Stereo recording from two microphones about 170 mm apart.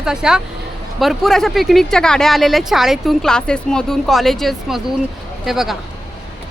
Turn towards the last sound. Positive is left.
turn(degrees=0)  # may be behind; listen again after turning